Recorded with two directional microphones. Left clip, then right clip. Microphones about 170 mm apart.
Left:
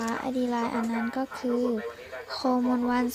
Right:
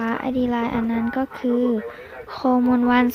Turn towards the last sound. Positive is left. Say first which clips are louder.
# right 8 dB
turn(degrees=10)  # may be behind; listen again after turning